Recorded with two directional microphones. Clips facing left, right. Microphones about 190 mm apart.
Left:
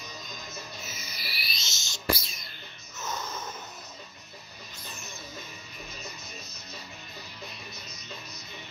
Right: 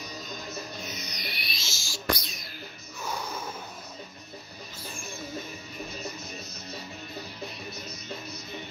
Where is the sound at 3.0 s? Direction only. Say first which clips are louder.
Right 1 dB; 10° right (ahead or behind).